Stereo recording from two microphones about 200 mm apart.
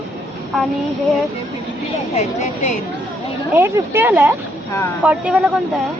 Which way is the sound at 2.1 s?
35° left (ahead or behind).